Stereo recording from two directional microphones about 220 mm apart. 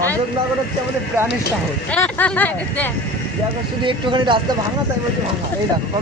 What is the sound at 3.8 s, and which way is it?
Speech, 20° right (ahead or behind).